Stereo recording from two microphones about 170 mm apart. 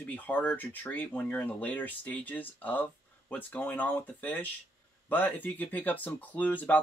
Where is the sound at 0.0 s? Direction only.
10° left (ahead or behind).